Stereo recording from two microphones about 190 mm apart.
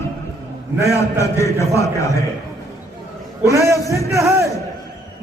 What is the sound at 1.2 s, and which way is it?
Speech, 15° left (ahead or behind).